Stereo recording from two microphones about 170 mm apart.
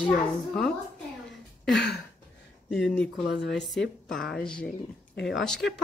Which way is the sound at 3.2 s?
85° left.